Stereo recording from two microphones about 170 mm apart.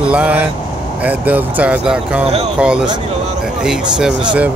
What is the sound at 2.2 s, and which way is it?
Speech, 35° right (ahead or behind).